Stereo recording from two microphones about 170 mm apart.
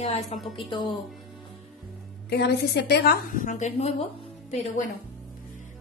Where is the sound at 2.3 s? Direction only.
80° left.